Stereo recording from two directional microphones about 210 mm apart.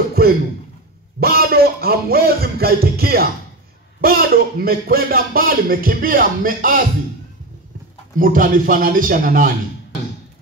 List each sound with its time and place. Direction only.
0.2 s a sound: 45° right (ahead or behind)
1.2 s music: 45° right (ahead or behind)
4.0 s a man's voice: 45° right (ahead or behind)
8.2 s speech: 40° right (ahead or behind)